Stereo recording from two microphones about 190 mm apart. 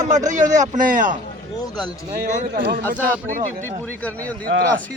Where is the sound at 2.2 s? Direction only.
50° right (ahead or behind).